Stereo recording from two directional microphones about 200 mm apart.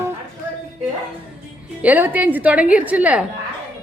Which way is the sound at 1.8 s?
10° right (ahead or behind).